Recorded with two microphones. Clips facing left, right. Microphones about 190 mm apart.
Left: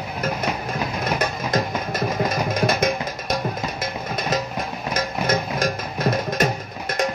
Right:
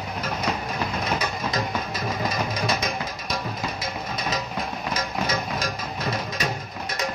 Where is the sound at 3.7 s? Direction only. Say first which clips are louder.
Left 3 dB; 50° left (ahead or behind).